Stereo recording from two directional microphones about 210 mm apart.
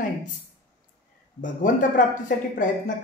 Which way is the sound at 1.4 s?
40° left (ahead or behind).